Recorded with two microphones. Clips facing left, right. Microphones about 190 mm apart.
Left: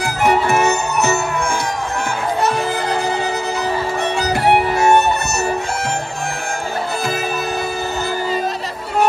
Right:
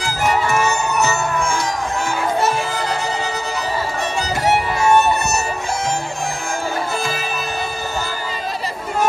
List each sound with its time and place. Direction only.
0.0 s music: 60° left (ahead or behind)
4.2 s music: 60° left (ahead or behind)